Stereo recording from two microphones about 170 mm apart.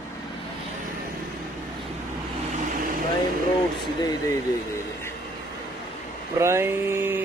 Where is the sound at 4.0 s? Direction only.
20° left (ahead or behind).